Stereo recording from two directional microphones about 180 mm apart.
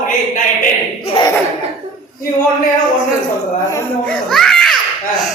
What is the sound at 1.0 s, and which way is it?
Laughter, 30° left (ahead or behind).